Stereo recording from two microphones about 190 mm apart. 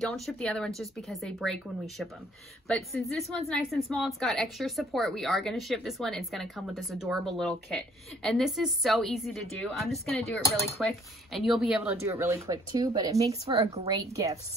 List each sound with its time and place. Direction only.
0.0 s a woman's voice: centre (ahead or behind); by 14.3 s 20° right (ahead or behind)